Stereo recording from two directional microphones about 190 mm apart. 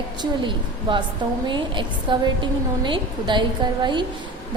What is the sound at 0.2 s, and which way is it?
A woman's voice, 25° right (ahead or behind).